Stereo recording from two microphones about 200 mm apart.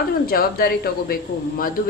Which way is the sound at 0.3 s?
50° left (ahead or behind).